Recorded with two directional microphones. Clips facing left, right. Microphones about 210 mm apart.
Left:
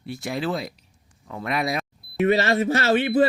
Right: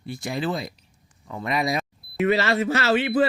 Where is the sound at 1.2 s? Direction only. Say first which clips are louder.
Right 1 dB; centre (ahead or behind).